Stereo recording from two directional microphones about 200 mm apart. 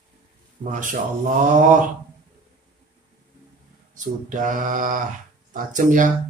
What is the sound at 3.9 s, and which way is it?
Speech, 40° right (ahead or behind).